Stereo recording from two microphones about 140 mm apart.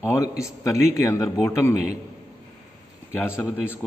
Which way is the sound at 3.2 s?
15° left (ahead or behind).